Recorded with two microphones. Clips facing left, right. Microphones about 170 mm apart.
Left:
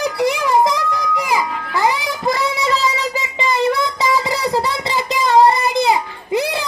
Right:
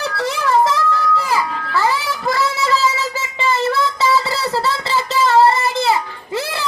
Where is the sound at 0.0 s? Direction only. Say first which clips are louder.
Left 3 dB; 15° left (ahead or behind).